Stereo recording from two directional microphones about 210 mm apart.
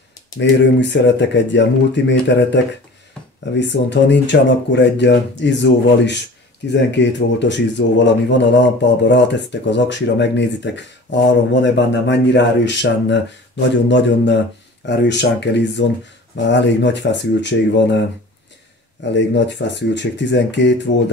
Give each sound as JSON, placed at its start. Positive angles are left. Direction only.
{"t": 0.4, "sound": "speech", "side_deg": 55}
{"t": 19.1, "sound": "speech", "side_deg": 55}